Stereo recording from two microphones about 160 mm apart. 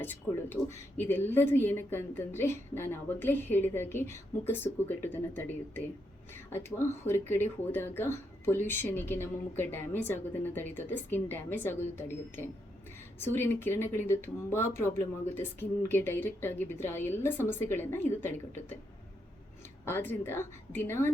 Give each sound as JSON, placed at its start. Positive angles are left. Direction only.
{"t": 0.0, "sound": "speech", "side_deg": 10}
{"t": 19.8, "sound": "speech", "side_deg": 15}